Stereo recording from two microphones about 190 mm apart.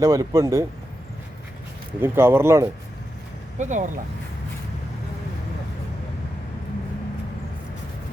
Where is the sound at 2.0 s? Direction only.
10° right (ahead or behind).